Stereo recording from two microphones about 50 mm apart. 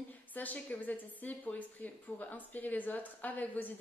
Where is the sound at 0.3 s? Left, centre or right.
Left.